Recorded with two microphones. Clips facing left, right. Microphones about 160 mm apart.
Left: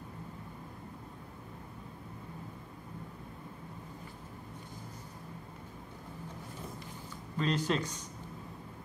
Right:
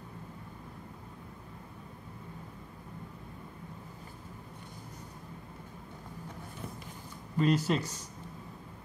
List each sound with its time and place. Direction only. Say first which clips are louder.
7.3 s speech: right 4 dB; 10° right (ahead or behind)